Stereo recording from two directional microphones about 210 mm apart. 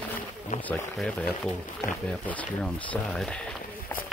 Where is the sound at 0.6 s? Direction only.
5° left (ahead or behind).